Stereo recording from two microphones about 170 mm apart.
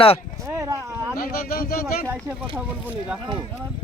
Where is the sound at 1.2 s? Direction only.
60° left (ahead or behind).